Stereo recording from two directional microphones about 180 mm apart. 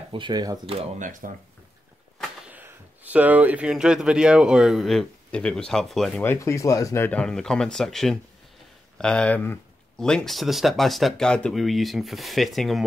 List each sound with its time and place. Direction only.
0.1 s speech: 25° right (ahead or behind); by 1.3 s 45° right (ahead or behind)
2.4 s speech: 10° right (ahead or behind)
6.2 s speech: 15° left (ahead or behind)